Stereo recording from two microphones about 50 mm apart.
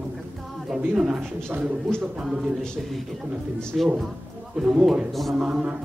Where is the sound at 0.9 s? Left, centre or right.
Centre.